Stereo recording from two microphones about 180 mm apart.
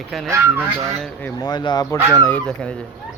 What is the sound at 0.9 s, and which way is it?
Speech, centre (ahead or behind).